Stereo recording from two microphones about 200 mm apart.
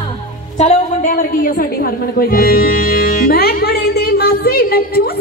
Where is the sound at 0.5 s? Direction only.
35° left (ahead or behind).